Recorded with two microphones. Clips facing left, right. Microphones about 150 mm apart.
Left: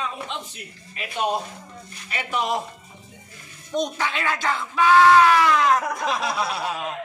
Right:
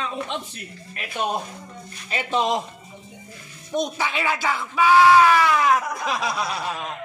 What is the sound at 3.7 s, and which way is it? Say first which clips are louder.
A man's voice: even; 10° right (ahead or behind).